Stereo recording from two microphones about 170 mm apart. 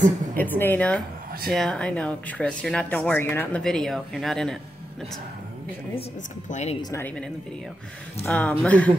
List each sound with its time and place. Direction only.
0.4 s speech: 10° left (ahead or behind)
6.5 s speech: 40° left (ahead or behind)
6.8 s speech: 20° left (ahead or behind)
8.3 s speech: 5° left (ahead or behind)